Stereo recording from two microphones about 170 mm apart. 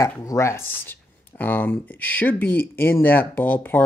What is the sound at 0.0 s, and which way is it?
Speech, 20° left (ahead or behind).